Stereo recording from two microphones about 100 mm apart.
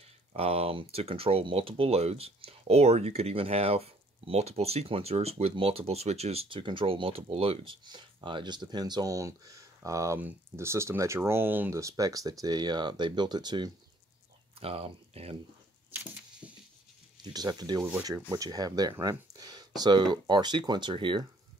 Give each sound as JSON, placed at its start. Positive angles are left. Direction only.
{"t": 0.3, "sound": "speech", "side_deg": -90}
{"t": 6.6, "sound": "speech", "side_deg": -60}
{"t": 7.8, "sound": "speech", "side_deg": -50}
{"t": 11.7, "sound": "speech", "side_deg": -35}
{"t": 14.6, "sound": "speech", "side_deg": -75}
{"t": 17.2, "sound": "speech", "side_deg": -40}